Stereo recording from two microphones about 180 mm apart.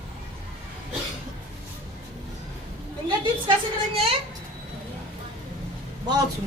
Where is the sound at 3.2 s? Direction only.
30° right (ahead or behind).